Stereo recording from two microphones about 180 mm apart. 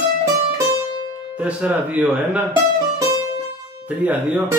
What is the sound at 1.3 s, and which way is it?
A man's voice, 5° right (ahead or behind).